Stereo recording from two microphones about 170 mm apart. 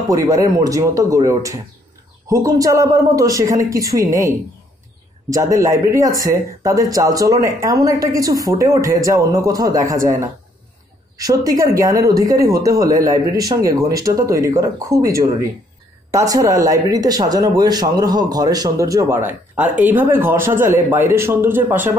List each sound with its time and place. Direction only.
0.1 s speech: 20° right (ahead or behind)
11.1 s speech: 20° right (ahead or behind)